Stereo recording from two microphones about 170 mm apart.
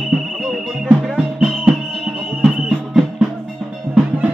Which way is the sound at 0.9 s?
Centre (ahead or behind).